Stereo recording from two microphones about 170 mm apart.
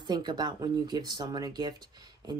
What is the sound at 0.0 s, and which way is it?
Speech, 25° right (ahead or behind).